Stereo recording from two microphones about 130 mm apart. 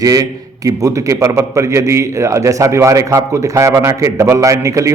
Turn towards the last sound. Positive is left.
turn(degrees=-25)  # may be behind; listen again after turning